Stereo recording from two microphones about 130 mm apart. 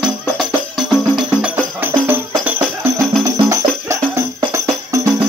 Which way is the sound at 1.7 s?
15° right (ahead or behind).